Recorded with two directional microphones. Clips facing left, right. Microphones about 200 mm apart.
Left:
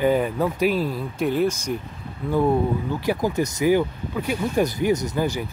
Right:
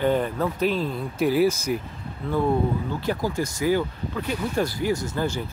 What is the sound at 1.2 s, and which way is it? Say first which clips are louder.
Speech: right 2 dB; 5° right (ahead or behind).